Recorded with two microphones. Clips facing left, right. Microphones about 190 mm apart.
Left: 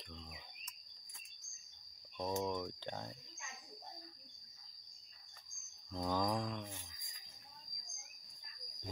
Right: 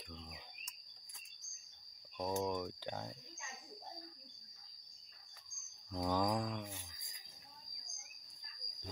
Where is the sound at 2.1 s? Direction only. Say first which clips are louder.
Right 1 dB; 10° right (ahead or behind).